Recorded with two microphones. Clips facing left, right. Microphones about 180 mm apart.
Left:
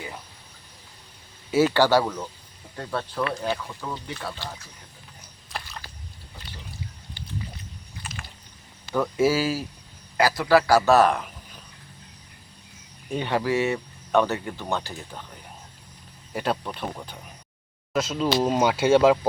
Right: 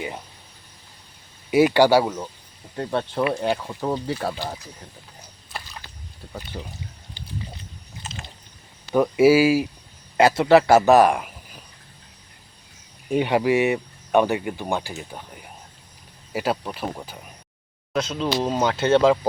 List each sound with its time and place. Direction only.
1.5 s a man's voice: 15° right (ahead or behind)
3.8 s speech: 40° right (ahead or behind)
5.5 s a sound: centre (ahead or behind)
6.3 s speech: 55° right (ahead or behind)
8.0 s a sound: 25° right (ahead or behind)
9.0 s speech: 10° right (ahead or behind)
10.2 s a man's voice: 25° right (ahead or behind)
13.1 s speech: 15° right (ahead or behind)
17.9 s speech: 5° left (ahead or behind)